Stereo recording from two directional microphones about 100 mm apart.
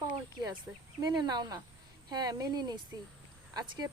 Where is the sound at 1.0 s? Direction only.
45° right (ahead or behind).